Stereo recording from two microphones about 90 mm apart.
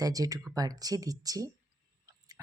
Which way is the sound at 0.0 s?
40° right (ahead or behind).